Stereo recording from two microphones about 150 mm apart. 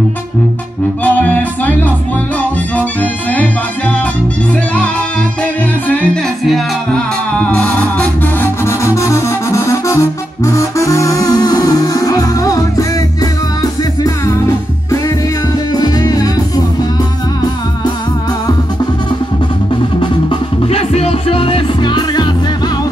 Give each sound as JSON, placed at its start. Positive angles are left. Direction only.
{"t": 1.0, "sound": "music", "side_deg": 10}
{"t": 5.4, "sound": "music", "side_deg": 10}
{"t": 15.7, "sound": "music", "side_deg": 25}
{"t": 20.0, "sound": "music", "side_deg": 35}